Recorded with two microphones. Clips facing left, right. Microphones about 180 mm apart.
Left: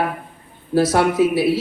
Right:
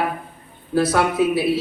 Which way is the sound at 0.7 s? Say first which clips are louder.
Left 2 dB; 30° left (ahead or behind).